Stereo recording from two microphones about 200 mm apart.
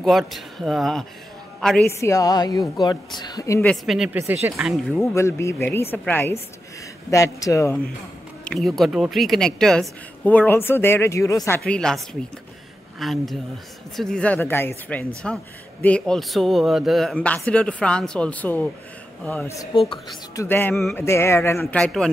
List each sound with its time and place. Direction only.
0.0 s a woman's voice: centre (ahead or behind)
1.9 s speech: 15° left (ahead or behind)
3.8 s a woman's voice: centre (ahead or behind)
4.2 s speech: 15° right (ahead or behind)
4.6 s a woman's voice: centre (ahead or behind)
5.1 s speech: 15° left (ahead or behind)
8.5 s a woman's voice: centre (ahead or behind)